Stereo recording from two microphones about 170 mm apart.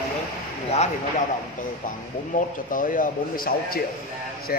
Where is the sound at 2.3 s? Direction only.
50° left (ahead or behind).